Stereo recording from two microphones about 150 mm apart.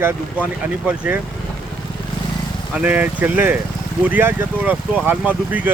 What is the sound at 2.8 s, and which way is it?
Speech, 10° right (ahead or behind).